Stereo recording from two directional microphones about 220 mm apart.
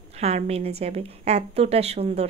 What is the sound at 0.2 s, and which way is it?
A woman's voice, 30° right (ahead or behind).